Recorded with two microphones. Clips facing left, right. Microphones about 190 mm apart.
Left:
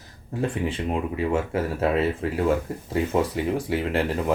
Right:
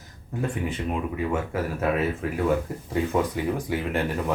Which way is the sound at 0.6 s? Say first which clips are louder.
Left 2 dB; 30° left (ahead or behind).